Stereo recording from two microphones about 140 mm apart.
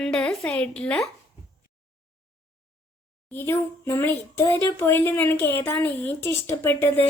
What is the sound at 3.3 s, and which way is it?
A woman's voice, 20° left (ahead or behind).